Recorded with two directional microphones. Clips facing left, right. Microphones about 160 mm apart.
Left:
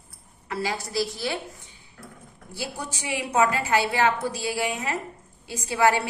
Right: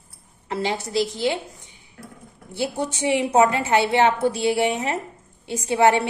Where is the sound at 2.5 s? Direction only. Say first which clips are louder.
Right 8 dB; 25° right (ahead or behind).